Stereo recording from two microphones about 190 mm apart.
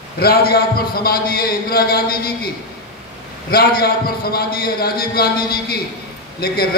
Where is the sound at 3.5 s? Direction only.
55° left (ahead or behind).